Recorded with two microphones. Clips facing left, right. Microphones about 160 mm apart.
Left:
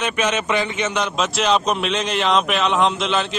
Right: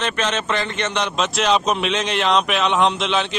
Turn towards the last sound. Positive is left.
turn(degrees=0)  # may be behind; listen again after turning